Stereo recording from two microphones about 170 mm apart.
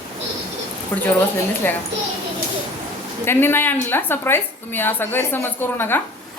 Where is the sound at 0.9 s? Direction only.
10° left (ahead or behind).